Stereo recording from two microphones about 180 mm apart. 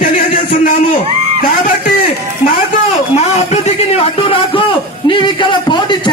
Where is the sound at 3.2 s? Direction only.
40° left (ahead or behind).